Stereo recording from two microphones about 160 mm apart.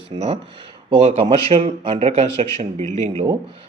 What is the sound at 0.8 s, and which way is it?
Speech, 35° right (ahead or behind).